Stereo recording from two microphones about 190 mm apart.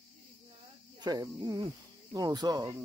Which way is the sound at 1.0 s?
20° right (ahead or behind).